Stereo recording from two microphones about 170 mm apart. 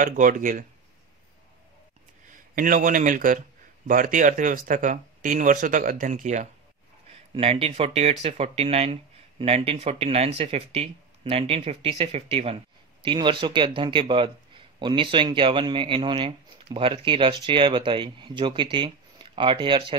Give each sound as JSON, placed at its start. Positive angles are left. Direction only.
{"t": 0.0, "sound": "speech", "side_deg": -50}
{"t": 2.5, "sound": "speech", "side_deg": -55}
{"t": 7.3, "sound": "speech", "side_deg": -35}